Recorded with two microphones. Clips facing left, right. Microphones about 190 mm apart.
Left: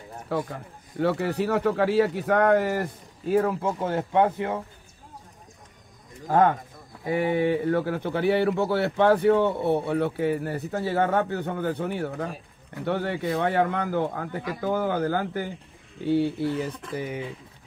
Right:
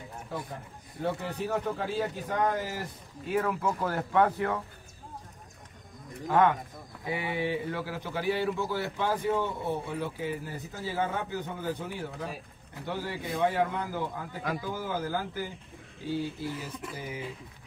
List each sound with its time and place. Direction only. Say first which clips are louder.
0.3 s a man's voice: left 10 dB; 80° left; by 2.9 s 65° left (ahead or behind)
3.3 s speech: left 6 dB; 35° left (ahead or behind)
6.2 s speech: left 3 dB; 40° left (ahead or behind); by 17.2 s 65° left (ahead or behind)